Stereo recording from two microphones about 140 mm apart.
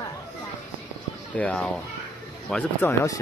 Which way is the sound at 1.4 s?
5° left (ahead or behind).